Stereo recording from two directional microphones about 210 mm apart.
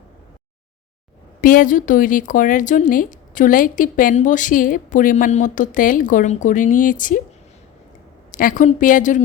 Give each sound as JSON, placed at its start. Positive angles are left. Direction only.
{"t": 1.4, "sound": "speech", "side_deg": 40}
{"t": 8.3, "sound": "speech", "side_deg": 40}